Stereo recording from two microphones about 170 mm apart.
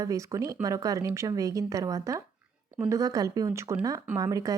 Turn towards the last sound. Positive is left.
turn(degrees=-20)  # may be behind; listen again after turning